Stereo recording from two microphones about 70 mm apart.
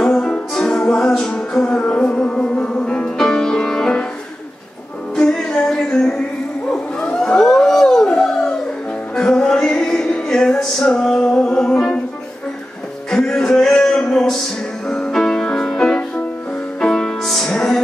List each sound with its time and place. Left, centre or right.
0.0 s music: centre
5.1 s music: centre
6.7 s a sound: centre
9.1 s music: centre
13.1 s a sound: centre
14.9 s music: centre